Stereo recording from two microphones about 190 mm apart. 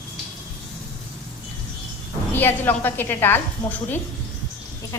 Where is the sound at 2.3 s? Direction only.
10° left (ahead or behind).